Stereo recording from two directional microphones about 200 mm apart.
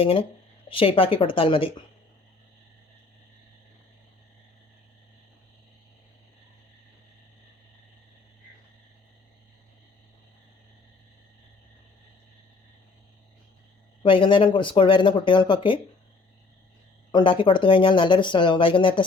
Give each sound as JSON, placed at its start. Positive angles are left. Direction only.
{"t": 0.0, "sound": "speech", "side_deg": 25}
{"t": 14.0, "sound": "speech", "side_deg": 25}
{"t": 17.1, "sound": "speech", "side_deg": 25}